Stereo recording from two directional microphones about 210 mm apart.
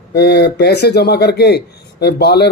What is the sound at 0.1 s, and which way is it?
Speech, 50° left (ahead or behind).